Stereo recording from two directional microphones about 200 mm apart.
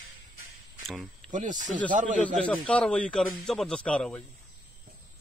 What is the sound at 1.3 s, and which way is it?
Speech, 40° right (ahead or behind).